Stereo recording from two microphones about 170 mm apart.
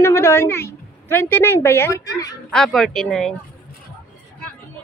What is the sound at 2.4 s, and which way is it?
Speech, 5° left (ahead or behind).